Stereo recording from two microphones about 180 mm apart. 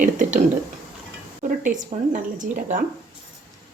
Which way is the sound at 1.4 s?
45° right (ahead or behind).